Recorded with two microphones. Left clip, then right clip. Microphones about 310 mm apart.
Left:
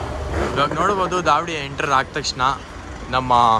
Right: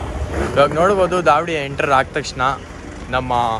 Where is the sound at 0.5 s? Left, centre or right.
Centre.